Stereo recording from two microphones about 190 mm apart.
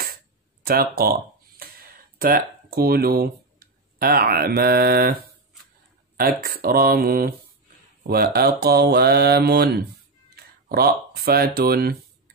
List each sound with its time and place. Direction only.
0.7 s speech: 50° right (ahead or behind)
6.1 s speech: 50° right (ahead or behind)
8.1 s mantra: 55° right (ahead or behind)
10.3 s speech: 55° right (ahead or behind)